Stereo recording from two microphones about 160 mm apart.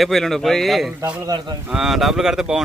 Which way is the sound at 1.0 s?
10° right (ahead or behind).